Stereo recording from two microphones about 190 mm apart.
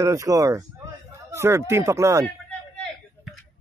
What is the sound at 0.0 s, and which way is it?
Speech, 15° right (ahead or behind).